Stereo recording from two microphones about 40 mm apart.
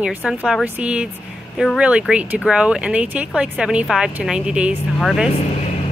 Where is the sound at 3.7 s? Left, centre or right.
Right.